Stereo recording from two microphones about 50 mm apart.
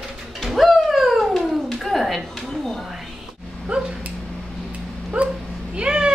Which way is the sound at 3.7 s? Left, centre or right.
Right.